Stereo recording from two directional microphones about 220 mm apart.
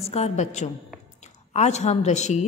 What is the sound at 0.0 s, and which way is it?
Speech, 30° left (ahead or behind).